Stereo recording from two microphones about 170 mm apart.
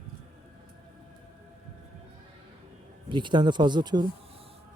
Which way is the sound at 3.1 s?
30° right (ahead or behind).